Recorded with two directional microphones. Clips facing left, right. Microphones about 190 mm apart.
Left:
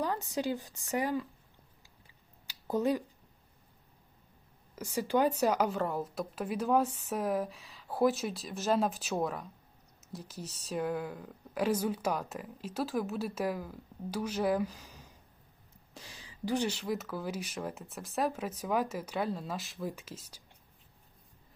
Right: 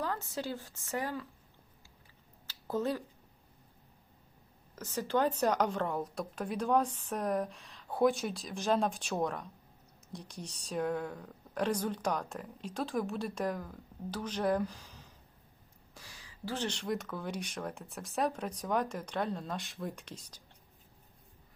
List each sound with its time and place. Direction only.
0.0 s speech: 15° left (ahead or behind)
2.5 s a sound: 15° left (ahead or behind)
4.7 s a woman's voice: 10° left (ahead or behind)
16.0 s a woman's voice: 20° left (ahead or behind); by 20.4 s 5° left (ahead or behind)